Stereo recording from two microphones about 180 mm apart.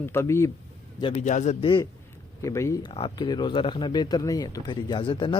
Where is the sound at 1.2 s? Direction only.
40° left (ahead or behind).